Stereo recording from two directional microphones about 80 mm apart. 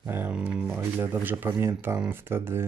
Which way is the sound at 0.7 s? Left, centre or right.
Right.